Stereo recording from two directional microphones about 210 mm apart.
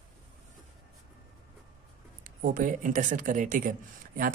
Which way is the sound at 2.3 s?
40° right (ahead or behind).